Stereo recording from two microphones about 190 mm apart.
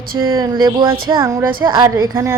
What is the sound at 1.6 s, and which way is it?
Speech, 20° right (ahead or behind).